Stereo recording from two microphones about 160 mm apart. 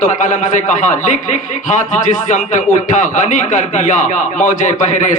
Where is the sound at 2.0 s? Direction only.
50° left (ahead or behind).